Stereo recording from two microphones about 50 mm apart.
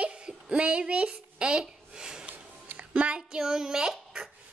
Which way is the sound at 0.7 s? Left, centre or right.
Right.